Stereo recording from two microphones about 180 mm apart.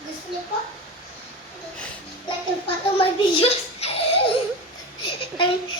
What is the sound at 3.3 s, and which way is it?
Giggle, 35° left (ahead or behind).